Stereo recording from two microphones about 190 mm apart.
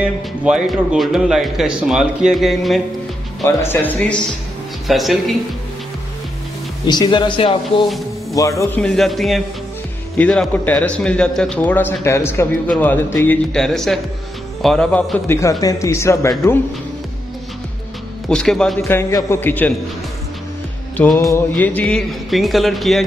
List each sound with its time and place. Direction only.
0.0 s speech: 5° right (ahead or behind)
3.4 s speech: 10° left (ahead or behind)
6.9 s speech: 25° left (ahead or behind)
8.4 s speech: 15° left (ahead or behind)
8.8 s speech: centre (ahead or behind)
18.3 s speech: 5° left (ahead or behind)
18.9 s speech: 15° left (ahead or behind)
20.9 s speech: 10° left (ahead or behind)